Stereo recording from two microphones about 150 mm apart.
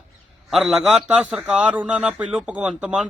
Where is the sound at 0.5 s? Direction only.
Centre (ahead or behind).